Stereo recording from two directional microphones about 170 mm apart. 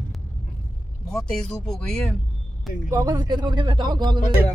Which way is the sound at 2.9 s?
20° right (ahead or behind).